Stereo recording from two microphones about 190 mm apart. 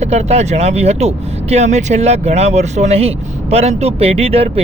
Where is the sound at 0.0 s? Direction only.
35° right (ahead or behind).